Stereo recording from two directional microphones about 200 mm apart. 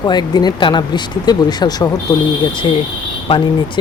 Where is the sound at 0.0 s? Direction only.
20° left (ahead or behind).